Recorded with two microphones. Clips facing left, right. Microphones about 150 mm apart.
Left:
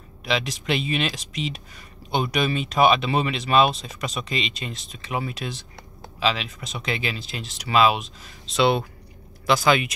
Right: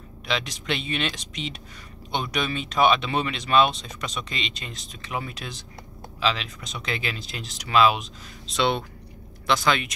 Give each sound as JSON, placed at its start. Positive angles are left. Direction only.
{"t": 0.2, "sound": "speech", "side_deg": 5}